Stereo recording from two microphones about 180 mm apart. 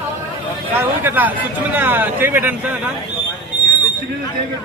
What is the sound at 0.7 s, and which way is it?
A man's voice, 10° right (ahead or behind).